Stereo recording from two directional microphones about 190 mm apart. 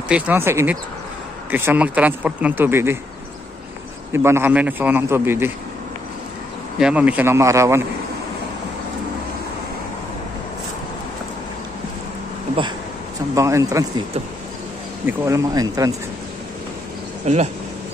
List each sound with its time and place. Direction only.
0.1 s speech: 10° right (ahead or behind)
4.1 s speech: 15° right (ahead or behind)
6.8 s speech: 5° right (ahead or behind)
13.3 s speech: 15° right (ahead or behind)
15.0 s speech: 15° right (ahead or behind)
17.3 s speech: 35° right (ahead or behind)